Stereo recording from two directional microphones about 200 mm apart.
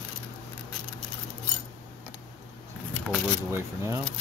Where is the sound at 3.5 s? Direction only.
15° right (ahead or behind).